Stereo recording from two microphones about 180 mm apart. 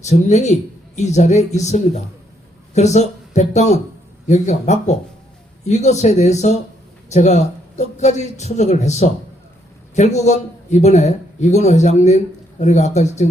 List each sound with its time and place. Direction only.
0.0 s a man's voice: 40° left (ahead or behind)